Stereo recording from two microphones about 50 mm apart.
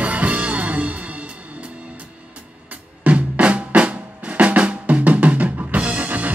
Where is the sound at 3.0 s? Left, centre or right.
Right.